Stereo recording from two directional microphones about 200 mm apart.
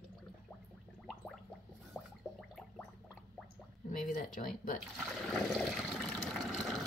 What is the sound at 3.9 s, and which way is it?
Speech, 45° left (ahead or behind).